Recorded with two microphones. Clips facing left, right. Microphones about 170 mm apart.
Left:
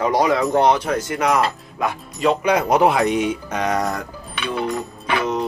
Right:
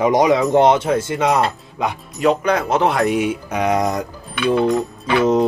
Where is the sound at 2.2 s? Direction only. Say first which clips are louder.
Right 1 dB; 10° left (ahead or behind).